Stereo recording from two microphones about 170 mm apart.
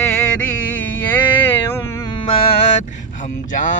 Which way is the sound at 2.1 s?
30° left (ahead or behind).